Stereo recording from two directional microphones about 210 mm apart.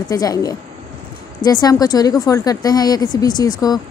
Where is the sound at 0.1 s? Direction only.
15° left (ahead or behind).